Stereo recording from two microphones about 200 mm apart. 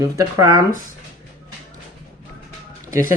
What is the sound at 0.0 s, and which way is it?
Speech, 15° right (ahead or behind).